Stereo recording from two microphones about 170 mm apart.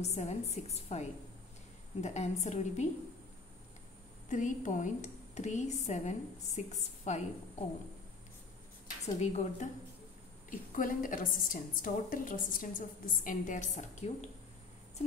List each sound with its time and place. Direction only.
0.0 s a woman's voice: 40° left (ahead or behind)
4.3 s a woman's voice: 50° left (ahead or behind)
9.0 s a woman's voice: 40° left (ahead or behind)
10.5 s a woman's voice: 50° left (ahead or behind)